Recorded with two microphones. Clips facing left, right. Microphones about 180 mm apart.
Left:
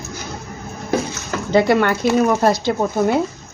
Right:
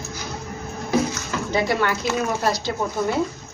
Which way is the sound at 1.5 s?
55° left (ahead or behind).